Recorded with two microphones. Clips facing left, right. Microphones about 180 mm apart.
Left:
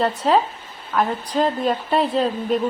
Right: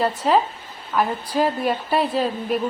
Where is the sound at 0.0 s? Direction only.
Centre (ahead or behind).